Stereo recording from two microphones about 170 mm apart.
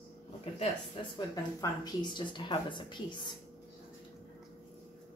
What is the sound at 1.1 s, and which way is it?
Speech, 25° left (ahead or behind).